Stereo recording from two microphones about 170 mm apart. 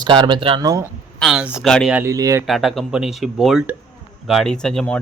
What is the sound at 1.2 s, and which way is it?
Speech, 5° right (ahead or behind).